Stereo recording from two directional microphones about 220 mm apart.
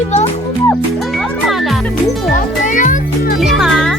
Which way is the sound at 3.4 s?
Centre (ahead or behind).